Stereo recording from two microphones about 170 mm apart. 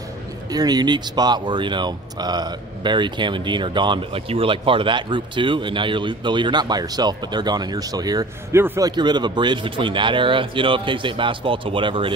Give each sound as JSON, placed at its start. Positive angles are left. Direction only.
{"t": 0.5, "sound": "speech", "side_deg": -25}